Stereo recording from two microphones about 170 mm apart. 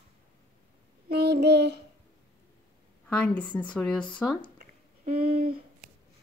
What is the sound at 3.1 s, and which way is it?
A woman's voice, 5° left (ahead or behind).